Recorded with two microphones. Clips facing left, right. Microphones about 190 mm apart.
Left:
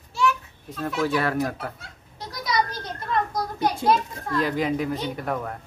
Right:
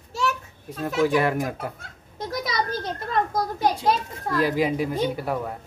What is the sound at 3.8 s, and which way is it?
Speech, 50° left (ahead or behind).